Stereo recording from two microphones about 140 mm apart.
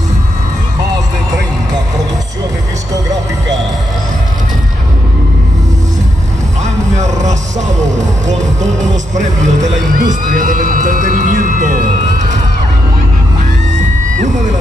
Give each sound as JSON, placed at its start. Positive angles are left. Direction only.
{"t": 6.6, "sound": "music", "side_deg": -55}
{"t": 9.1, "sound": "music", "side_deg": -60}